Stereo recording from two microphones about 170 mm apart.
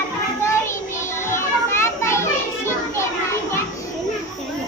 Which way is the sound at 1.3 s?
15° left (ahead or behind).